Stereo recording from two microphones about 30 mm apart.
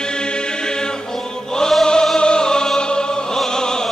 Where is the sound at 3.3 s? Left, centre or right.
Centre.